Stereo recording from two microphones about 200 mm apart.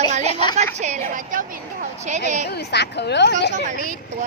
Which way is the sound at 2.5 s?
55° left (ahead or behind).